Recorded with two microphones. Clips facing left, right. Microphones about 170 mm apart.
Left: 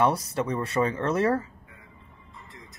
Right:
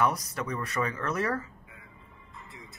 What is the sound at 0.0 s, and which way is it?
Speech, 30° left (ahead or behind).